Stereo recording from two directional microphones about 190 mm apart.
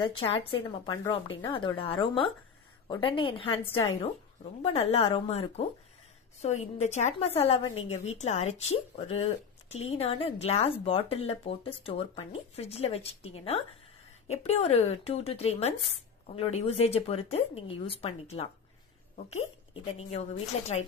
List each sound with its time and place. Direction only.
0.0 s a woman's voice: 25° left (ahead or behind)